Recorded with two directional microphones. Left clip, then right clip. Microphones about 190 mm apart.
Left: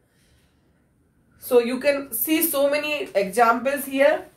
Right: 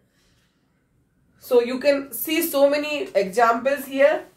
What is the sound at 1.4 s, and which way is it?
Speech, 15° right (ahead or behind).